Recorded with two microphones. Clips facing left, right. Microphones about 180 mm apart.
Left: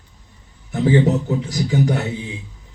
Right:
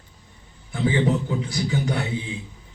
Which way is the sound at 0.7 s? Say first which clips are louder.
Left 5 dB; 40° left (ahead or behind).